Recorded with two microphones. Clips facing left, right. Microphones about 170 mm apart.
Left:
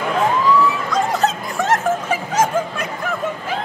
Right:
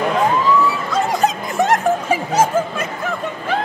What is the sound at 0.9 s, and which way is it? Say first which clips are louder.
Snicker: right 2 dB; 15° right (ahead or behind).